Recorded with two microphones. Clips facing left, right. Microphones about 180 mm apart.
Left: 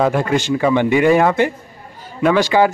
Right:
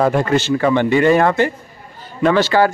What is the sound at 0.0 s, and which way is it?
A man's voice, 5° left (ahead or behind).